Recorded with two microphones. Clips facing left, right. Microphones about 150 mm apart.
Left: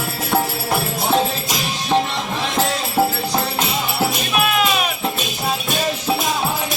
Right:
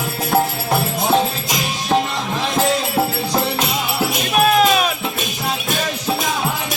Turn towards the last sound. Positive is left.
turn(degrees=-40)  # may be behind; listen again after turning